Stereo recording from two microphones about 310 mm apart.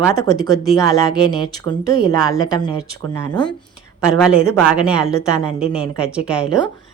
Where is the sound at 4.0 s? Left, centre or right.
Centre.